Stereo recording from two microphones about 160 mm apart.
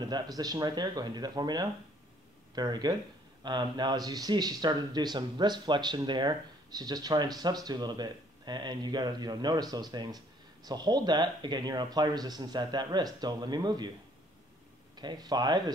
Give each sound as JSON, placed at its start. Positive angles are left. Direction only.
{"t": 0.0, "sound": "speech", "side_deg": -25}
{"t": 15.0, "sound": "speech", "side_deg": -25}